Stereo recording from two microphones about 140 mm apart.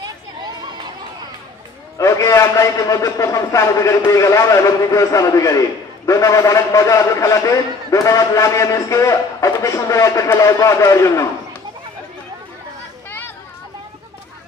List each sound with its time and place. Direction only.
2.0 s a man's voice: 20° left (ahead or behind)